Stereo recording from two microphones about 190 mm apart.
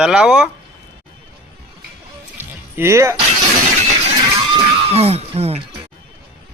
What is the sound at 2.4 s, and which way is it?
Music, 10° right (ahead or behind).